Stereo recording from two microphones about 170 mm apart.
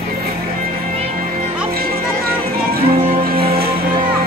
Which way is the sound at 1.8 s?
65° right (ahead or behind).